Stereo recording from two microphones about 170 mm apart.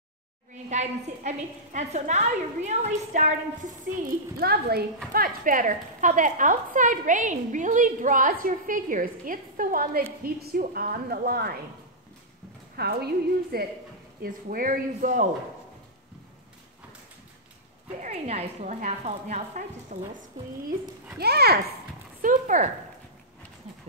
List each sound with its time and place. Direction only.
0.7 s a woman's voice: 45° right (ahead or behind); by 4.8 s 70° right (ahead or behind)
5.1 s a woman's voice: 55° right (ahead or behind)
12.7 s a woman's voice: 70° right (ahead or behind)
14.2 s a woman's voice: 55° right (ahead or behind)
18.0 s a woman's voice: 40° right (ahead or behind)
21.2 s a woman's voice: 70° right (ahead or behind)
22.2 s speech: 50° right (ahead or behind)